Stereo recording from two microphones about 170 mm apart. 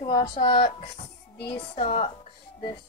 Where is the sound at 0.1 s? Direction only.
25° left (ahead or behind).